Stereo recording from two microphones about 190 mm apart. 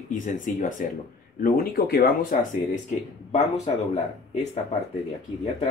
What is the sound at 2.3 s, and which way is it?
Speech, 40° left (ahead or behind).